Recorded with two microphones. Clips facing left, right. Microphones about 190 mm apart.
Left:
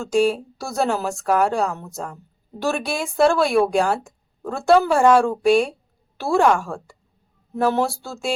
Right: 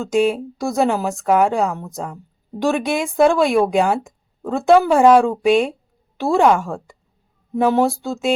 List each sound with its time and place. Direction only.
0.0 s speech: 20° right (ahead or behind)